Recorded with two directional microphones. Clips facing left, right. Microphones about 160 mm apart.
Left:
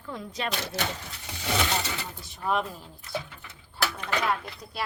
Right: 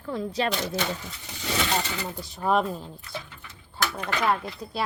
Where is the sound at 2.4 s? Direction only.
40° right (ahead or behind).